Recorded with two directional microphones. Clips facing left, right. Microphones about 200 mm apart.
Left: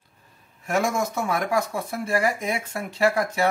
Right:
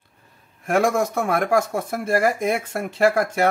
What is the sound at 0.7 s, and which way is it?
Speech, 55° right (ahead or behind).